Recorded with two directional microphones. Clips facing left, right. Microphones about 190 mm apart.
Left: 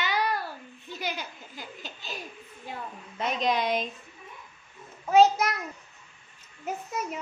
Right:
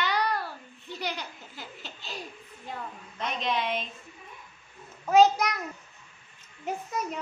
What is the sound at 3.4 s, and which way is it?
Speech, 40° left (ahead or behind).